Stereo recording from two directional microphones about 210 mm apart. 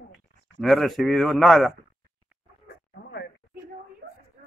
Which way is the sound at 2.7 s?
50° left (ahead or behind).